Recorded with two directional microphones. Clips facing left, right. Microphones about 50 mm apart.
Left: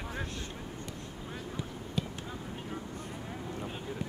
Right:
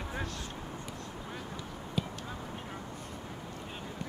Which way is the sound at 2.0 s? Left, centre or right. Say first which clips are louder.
Even; centre.